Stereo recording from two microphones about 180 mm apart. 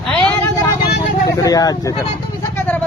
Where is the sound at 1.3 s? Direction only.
20° left (ahead or behind).